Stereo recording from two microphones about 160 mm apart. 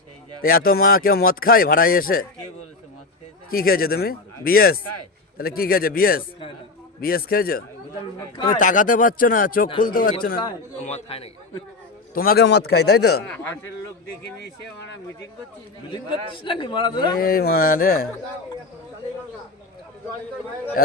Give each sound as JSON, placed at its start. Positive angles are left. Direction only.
{"t": 0.4, "sound": "speech", "side_deg": 65}
{"t": 3.5, "sound": "a man's voice", "side_deg": 70}
{"t": 8.5, "sound": "speech", "side_deg": 55}
{"t": 10.8, "sound": "a man's voice", "side_deg": 45}
{"t": 12.1, "sound": "a man's voice", "side_deg": 65}
{"t": 13.2, "sound": "a man's voice", "side_deg": 10}
{"t": 14.3, "sound": "a man's voice", "side_deg": 90}
{"t": 15.9, "sound": "a man's voice", "side_deg": 30}
{"t": 17.2, "sound": "a man's voice", "side_deg": 70}